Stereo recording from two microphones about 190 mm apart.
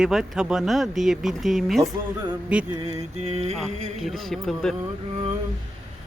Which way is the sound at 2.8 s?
35° right (ahead or behind).